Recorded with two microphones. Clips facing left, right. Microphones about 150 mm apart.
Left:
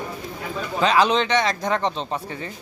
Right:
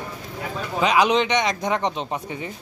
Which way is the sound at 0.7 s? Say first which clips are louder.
Even; 15° right (ahead or behind).